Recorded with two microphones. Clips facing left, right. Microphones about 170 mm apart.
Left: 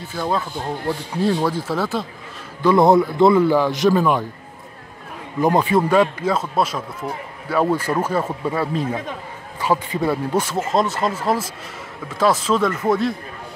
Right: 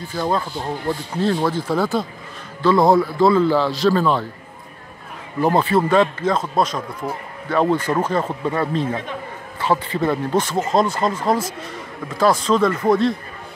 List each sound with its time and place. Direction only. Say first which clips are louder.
0.1 s speech: right 1 dB; 5° left (ahead or behind)
2.6 s speech: left 1 dB; 20° left (ahead or behind)
5.6 s speech: even; 15° left (ahead or behind)